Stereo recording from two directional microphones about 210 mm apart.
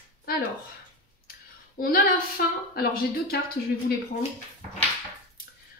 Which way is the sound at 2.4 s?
45° left (ahead or behind).